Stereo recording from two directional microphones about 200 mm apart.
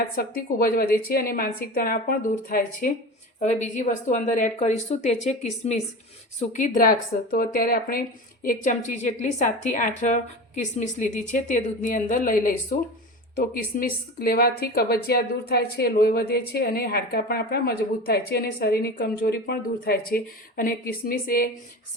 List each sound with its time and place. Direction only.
0.2 s a woman's voice: 50° left (ahead or behind)